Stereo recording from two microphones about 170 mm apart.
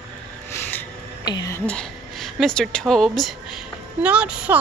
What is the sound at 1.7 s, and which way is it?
A woman's voice, 5° left (ahead or behind).